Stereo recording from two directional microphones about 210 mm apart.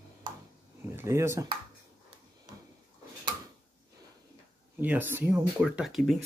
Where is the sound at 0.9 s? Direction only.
10° right (ahead or behind).